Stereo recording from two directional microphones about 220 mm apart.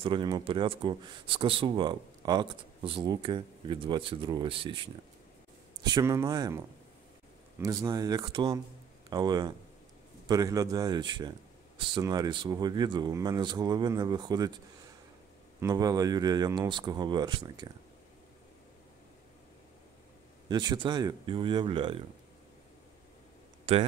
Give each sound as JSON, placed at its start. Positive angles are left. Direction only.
{"t": 0.0, "sound": "speech", "side_deg": -20}
{"t": 15.6, "sound": "speech", "side_deg": -15}
{"t": 20.4, "sound": "speech", "side_deg": -20}
{"t": 23.6, "sound": "speech", "side_deg": -25}